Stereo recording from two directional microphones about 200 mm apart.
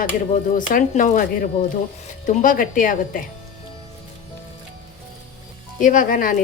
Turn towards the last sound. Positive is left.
turn(degrees=40)  # may be behind; listen again after turning